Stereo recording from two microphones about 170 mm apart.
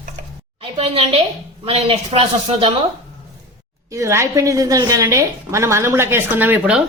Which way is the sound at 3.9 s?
15° right (ahead or behind).